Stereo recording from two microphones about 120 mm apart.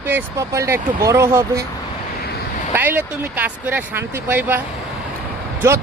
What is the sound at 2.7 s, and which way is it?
Speech, 15° right (ahead or behind).